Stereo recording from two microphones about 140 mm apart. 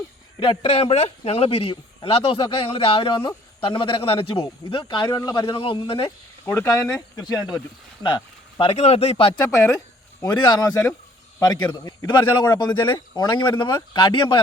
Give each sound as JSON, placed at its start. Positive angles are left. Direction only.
{"t": 0.3, "sound": "a man's voice", "side_deg": 40}
{"t": 6.4, "sound": "a man's voice", "side_deg": 20}
{"t": 9.4, "sound": "a man's voice", "side_deg": 25}